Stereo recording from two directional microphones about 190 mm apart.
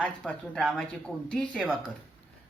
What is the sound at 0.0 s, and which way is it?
Speech, 5° left (ahead or behind).